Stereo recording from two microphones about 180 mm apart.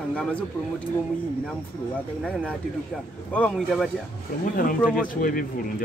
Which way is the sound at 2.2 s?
5° left (ahead or behind).